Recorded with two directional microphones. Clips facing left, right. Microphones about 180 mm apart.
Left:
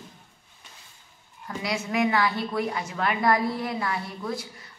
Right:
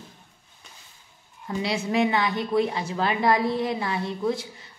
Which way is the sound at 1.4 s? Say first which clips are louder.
Right 3 dB; 30° right (ahead or behind).